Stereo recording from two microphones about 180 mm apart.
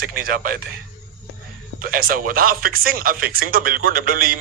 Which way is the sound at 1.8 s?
50° right (ahead or behind).